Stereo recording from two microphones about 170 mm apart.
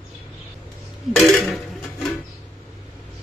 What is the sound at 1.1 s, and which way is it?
Dishes, centre (ahead or behind).